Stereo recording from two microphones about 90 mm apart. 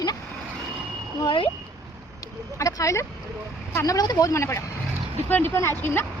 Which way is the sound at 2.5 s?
35° left (ahead or behind).